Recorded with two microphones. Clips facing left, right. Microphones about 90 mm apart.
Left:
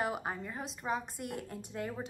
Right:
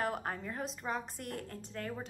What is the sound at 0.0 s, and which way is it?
A woman's voice, 10° left (ahead or behind).